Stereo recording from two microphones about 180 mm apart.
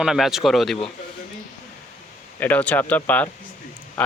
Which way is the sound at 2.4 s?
10° left (ahead or behind).